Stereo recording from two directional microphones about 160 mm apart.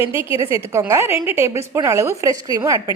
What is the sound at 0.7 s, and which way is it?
A woman's voice, 20° right (ahead or behind).